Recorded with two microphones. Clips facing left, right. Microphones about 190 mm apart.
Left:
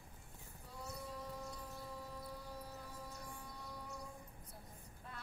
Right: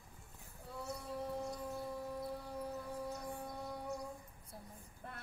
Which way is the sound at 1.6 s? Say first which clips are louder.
Right 7 dB; 60° right (ahead or behind).